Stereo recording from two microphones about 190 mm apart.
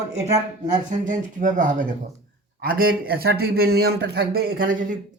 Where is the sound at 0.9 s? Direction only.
40° right (ahead or behind).